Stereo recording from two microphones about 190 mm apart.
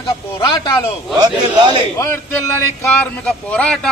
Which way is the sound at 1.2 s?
25° right (ahead or behind).